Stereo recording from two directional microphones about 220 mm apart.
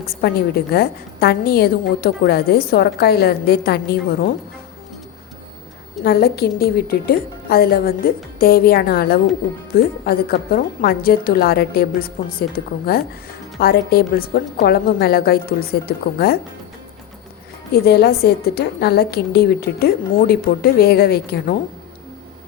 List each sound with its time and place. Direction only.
0.2 s a woman's voice: 45° left (ahead or behind)
6.0 s a woman's voice: 45° left (ahead or behind)
17.8 s a woman's voice: 45° left (ahead or behind)